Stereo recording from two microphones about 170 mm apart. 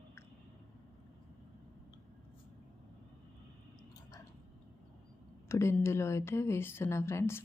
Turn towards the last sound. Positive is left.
turn(degrees=15)  # may be behind; listen again after turning